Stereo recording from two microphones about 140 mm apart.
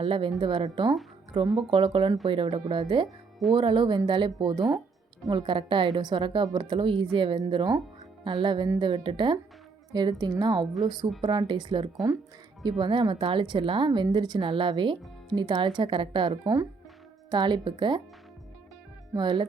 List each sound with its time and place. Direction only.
0.0 s a woman's voice: 35° right (ahead or behind)
19.1 s a woman's voice: 35° right (ahead or behind)